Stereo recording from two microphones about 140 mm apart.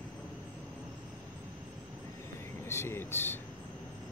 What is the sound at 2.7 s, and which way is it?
Speech, 15° left (ahead or behind).